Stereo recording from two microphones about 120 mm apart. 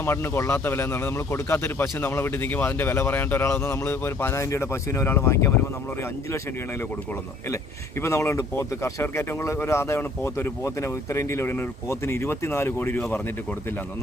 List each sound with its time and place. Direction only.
0.0 s speech: 20° left (ahead or behind)